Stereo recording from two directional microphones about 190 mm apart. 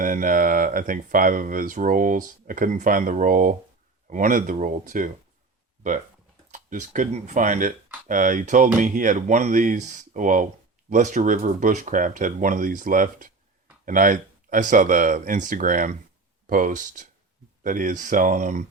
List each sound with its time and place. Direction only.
0.0 s speech: 45° right (ahead or behind)
6.5 s speech: 40° right (ahead or behind)